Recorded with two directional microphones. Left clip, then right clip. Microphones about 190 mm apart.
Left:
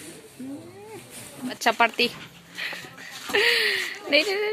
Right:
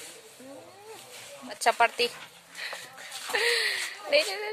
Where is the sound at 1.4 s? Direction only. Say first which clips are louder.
Left 2 dB; centre (ahead or behind).